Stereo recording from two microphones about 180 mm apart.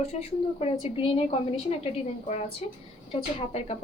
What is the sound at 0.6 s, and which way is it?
A woman's voice, 35° left (ahead or behind).